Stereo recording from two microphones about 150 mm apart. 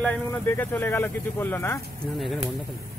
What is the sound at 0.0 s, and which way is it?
Speech, 10° left (ahead or behind).